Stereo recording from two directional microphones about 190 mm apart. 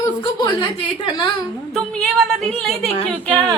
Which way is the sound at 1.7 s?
Centre (ahead or behind).